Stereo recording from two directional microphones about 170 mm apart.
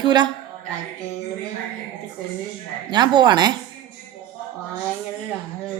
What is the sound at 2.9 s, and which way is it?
Speech, 25° right (ahead or behind).